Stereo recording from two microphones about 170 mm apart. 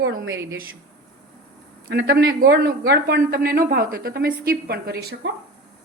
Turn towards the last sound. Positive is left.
turn(degrees=-70)  # may be behind; listen again after turning